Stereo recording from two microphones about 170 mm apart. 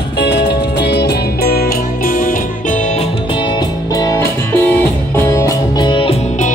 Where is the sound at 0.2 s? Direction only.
85° left.